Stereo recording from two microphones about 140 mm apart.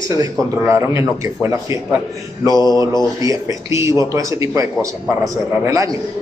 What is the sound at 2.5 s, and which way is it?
Mantra, 30° left (ahead or behind).